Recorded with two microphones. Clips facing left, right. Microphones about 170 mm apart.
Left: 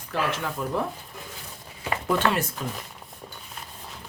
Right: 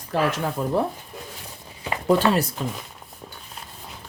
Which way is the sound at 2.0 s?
35° right (ahead or behind).